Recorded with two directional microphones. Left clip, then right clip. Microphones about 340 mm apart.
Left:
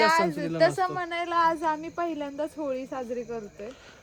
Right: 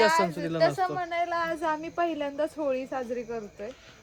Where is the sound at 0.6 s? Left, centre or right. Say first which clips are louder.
Left 1 dB; left.